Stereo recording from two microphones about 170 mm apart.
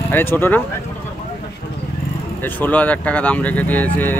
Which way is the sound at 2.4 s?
10° left (ahead or behind).